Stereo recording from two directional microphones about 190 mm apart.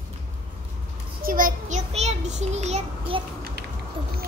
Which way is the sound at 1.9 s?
35° right (ahead or behind).